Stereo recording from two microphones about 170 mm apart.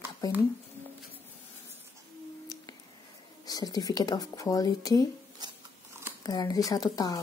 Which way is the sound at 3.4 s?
25° left (ahead or behind).